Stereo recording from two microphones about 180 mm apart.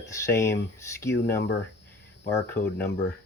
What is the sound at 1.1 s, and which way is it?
Speech, 75° left (ahead or behind).